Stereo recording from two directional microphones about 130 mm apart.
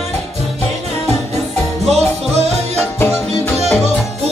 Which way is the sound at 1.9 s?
55° right (ahead or behind).